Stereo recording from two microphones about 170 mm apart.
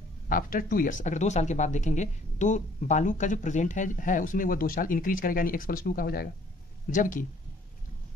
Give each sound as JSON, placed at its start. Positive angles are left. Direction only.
{"t": 0.3, "sound": "speech", "side_deg": 55}